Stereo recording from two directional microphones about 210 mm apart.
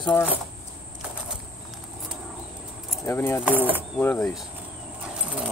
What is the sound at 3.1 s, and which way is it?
Speech, 10° left (ahead or behind).